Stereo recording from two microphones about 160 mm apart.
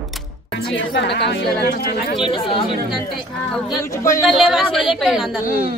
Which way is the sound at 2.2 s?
30° left (ahead or behind).